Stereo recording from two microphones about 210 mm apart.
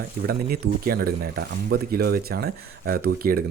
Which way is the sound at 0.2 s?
50° right (ahead or behind).